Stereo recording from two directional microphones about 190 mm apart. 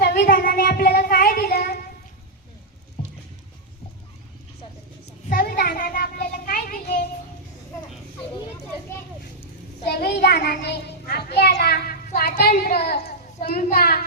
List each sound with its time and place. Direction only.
0.0 s child singing: 55° left (ahead or behind)
5.3 s child singing: 55° left (ahead or behind)
9.8 s a child's voice: 55° left (ahead or behind)